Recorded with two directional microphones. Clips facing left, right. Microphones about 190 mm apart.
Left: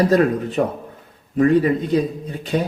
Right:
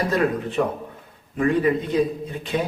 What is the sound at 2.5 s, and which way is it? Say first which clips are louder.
Speech: left 3 dB; 40° left (ahead or behind).